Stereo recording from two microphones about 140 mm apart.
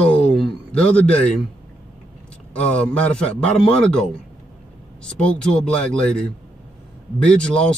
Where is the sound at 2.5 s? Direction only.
10° left (ahead or behind).